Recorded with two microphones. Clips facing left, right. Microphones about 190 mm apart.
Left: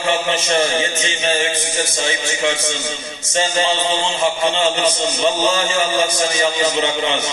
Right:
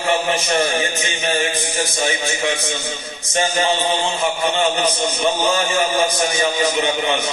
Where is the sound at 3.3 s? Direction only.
25° left (ahead or behind).